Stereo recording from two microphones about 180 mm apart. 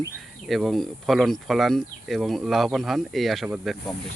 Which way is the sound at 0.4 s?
Centre (ahead or behind).